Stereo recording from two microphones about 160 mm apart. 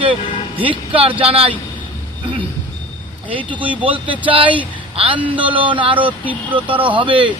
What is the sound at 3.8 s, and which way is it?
Speech, 30° right (ahead or behind).